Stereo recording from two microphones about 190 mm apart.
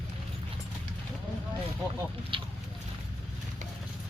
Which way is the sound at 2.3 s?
25° right (ahead or behind).